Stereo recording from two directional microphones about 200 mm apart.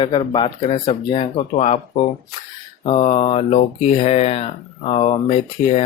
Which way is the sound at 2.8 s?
30° left (ahead or behind).